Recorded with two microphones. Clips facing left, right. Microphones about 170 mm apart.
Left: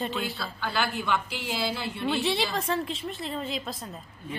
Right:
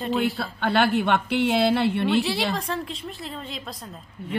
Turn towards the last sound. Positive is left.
turn(degrees=0)  # may be behind; listen again after turning